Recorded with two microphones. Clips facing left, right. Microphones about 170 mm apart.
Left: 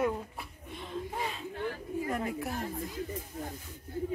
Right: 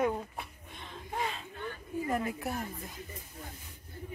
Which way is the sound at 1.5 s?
90° left.